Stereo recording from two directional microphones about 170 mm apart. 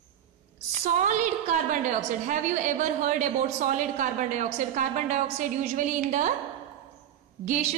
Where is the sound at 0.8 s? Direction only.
45° right (ahead or behind).